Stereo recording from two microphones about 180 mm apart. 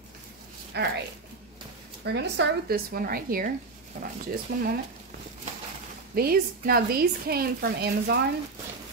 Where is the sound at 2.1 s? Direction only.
70° right (ahead or behind); by 4.6 s 55° right (ahead or behind).